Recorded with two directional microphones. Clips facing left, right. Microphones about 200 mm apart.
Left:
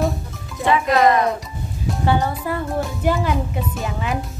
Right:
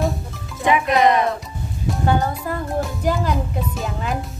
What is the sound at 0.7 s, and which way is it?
Speech, 15° right (ahead or behind).